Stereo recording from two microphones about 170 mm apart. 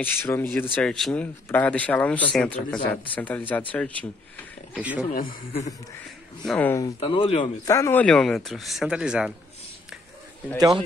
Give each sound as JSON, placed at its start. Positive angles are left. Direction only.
{"t": 0.0, "sound": "speech", "side_deg": 10}
{"t": 4.7, "sound": "speech", "side_deg": -5}
{"t": 5.1, "sound": "a man's voice", "side_deg": 55}
{"t": 6.4, "sound": "speech", "side_deg": 10}
{"t": 7.0, "sound": "speech", "side_deg": 30}
{"t": 7.6, "sound": "speech", "side_deg": 20}